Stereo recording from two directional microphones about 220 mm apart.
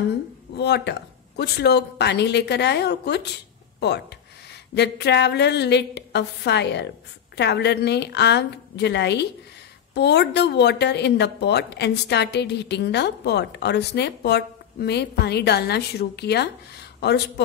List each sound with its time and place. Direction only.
0.6 s a woman's voice: 50° left (ahead or behind)